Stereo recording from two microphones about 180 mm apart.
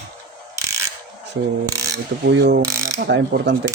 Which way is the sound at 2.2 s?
70° right (ahead or behind).